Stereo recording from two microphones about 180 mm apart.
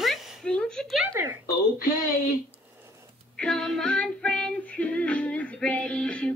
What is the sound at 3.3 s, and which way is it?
Music, 5° left (ahead or behind).